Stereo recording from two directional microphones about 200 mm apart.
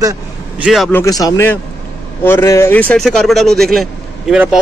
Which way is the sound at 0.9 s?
15° left (ahead or behind).